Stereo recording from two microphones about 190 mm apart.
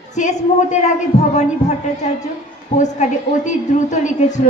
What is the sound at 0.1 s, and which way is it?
A woman's voice, 40° left (ahead or behind).